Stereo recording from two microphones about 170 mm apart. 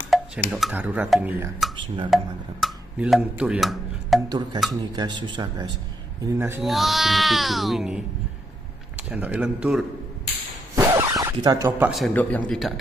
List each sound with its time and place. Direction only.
0.1 s a sound: centre (ahead or behind)
0.5 s speech: centre (ahead or behind)
4.3 s speech: 25° right (ahead or behind)
6.2 s speech: 15° right (ahead or behind)
6.6 s speech: centre (ahead or behind)
10.8 s zipper: 20° right (ahead or behind)
12.1 s speech: 10° left (ahead or behind)